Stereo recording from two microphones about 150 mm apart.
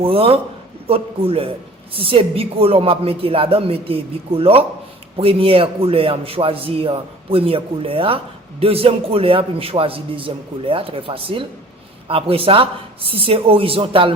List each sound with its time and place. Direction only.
0.0 s a woman's voice: 40° right (ahead or behind)